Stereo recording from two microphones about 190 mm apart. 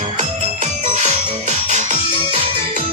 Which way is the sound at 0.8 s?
40° right (ahead or behind).